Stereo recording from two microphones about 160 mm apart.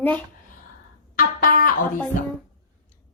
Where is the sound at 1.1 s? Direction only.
60° left (ahead or behind).